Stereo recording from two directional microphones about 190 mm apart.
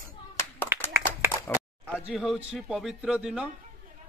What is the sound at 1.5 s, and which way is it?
Speech, 10° left (ahead or behind).